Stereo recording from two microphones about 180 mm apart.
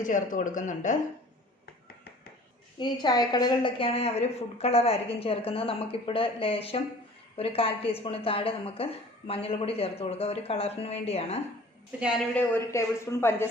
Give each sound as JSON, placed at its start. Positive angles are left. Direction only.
{"t": 0.0, "sound": "speech", "side_deg": 45}
{"t": 2.7, "sound": "a woman's voice", "side_deg": 25}
{"t": 12.3, "sound": "a woman's voice", "side_deg": 15}